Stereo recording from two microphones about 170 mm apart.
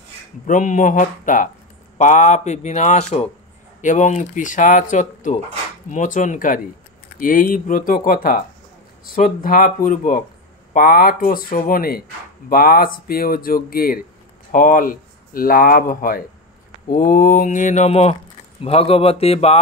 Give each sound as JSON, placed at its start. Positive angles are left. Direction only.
{"t": 0.5, "sound": "speech", "side_deg": 50}